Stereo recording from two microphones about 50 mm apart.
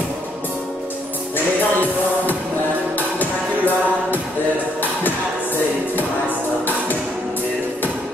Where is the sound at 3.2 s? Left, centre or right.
Left.